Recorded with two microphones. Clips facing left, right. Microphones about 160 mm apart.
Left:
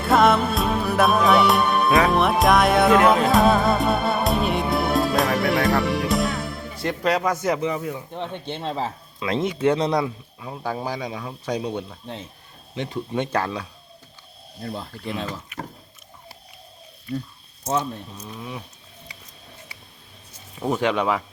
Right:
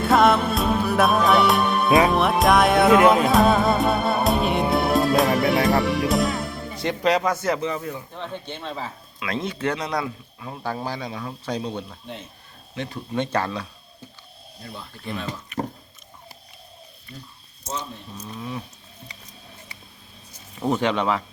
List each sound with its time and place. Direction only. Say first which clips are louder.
0.0 s music: even; centre (ahead or behind)
7.4 s speech: left 1 dB; 15° left (ahead or behind)
8.1 s speech: left 3 dB; 25° left (ahead or behind)
9.2 s speech: left 5 dB; 20° left (ahead or behind)
14.6 s speech: left 7 dB; 45° left (ahead or behind)
15.5 s speech: right 7 dB; 10° left (ahead or behind)
17.1 s speech: left 14 dB; 5° left (ahead or behind)
20.6 s speech: even; 5° left (ahead or behind)